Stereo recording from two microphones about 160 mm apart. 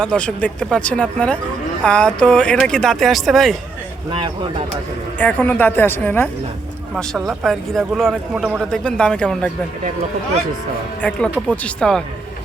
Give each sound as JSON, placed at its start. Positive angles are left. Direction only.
{"t": 0.0, "sound": "a man's voice", "side_deg": 5}
{"t": 5.2, "sound": "speech", "side_deg": 10}
{"t": 6.9, "sound": "a man's voice", "side_deg": 0}
{"t": 11.0, "sound": "a man's voice", "side_deg": 10}